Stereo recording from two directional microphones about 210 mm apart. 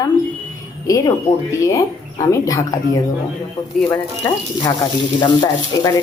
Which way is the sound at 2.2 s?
15° left (ahead or behind).